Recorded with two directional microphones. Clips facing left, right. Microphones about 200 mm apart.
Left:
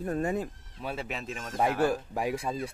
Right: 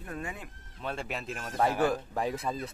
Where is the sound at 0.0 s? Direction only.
40° left (ahead or behind).